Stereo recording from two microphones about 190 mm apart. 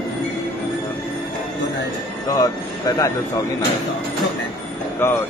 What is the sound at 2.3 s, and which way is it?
Speech, 20° left (ahead or behind).